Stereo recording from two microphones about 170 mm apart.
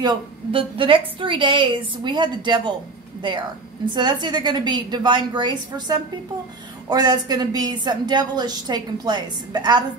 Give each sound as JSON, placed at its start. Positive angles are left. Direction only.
{"t": 0.0, "sound": "a woman's voice", "side_deg": -25}
{"t": 3.9, "sound": "a woman's voice", "side_deg": -25}